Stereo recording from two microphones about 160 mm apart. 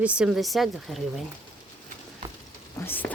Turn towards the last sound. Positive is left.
turn(degrees=15)  # may be behind; listen again after turning